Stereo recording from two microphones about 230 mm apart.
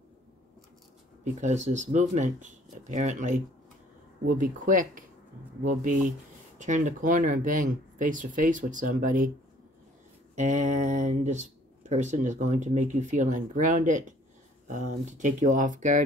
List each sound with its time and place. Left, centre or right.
1.2 s speech: right
10.3 s speech: right